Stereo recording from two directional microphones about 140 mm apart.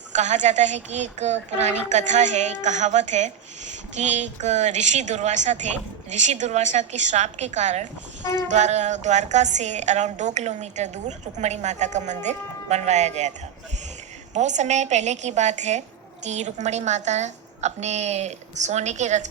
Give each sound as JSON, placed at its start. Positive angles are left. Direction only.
{"t": 0.1, "sound": "a woman's voice", "side_deg": -60}
{"t": 14.3, "sound": "a woman's voice", "side_deg": -55}